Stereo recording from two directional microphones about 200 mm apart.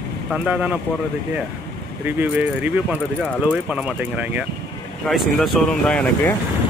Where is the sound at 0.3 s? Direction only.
5° right (ahead or behind).